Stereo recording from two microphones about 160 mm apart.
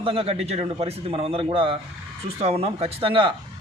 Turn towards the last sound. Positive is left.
turn(degrees=-35)  # may be behind; listen again after turning